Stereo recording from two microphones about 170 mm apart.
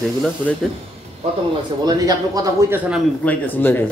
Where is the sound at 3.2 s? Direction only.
10° left (ahead or behind).